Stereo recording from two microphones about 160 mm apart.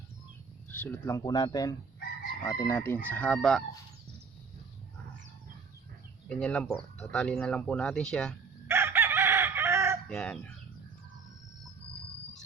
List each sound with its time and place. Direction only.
0.7 s speech: 10° left (ahead or behind)
6.2 s speech: 5° left (ahead or behind)
8.6 s chicken: 15° right (ahead or behind)
10.1 s chicken: 5° left (ahead or behind)